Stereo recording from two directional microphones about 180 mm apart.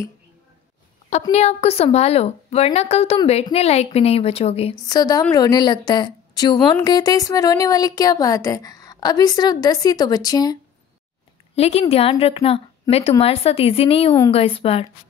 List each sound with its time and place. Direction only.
1.3 s a woman's voice: 35° left (ahead or behind)
4.8 s a woman's voice: 20° left (ahead or behind)
11.5 s a woman's voice: 35° left (ahead or behind)